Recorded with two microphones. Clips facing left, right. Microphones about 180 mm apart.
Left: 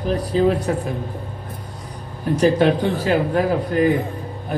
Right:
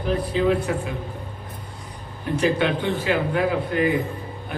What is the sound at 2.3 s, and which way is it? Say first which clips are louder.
A man's voice: left 5 dB; 40° left (ahead or behind).